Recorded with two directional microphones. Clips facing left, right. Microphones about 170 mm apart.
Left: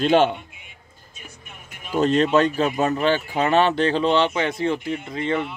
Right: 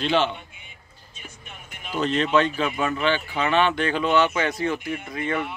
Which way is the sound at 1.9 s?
40° left (ahead or behind).